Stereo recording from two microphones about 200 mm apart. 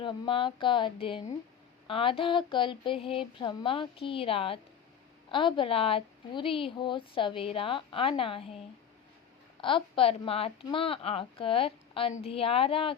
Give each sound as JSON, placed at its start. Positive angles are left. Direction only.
{"t": 0.0, "sound": "speech", "side_deg": 25}
{"t": 9.6, "sound": "speech", "side_deg": 25}